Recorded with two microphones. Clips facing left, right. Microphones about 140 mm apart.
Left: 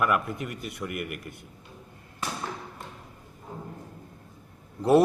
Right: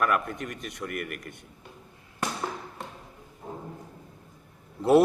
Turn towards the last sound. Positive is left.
turn(degrees=0)  # may be behind; listen again after turning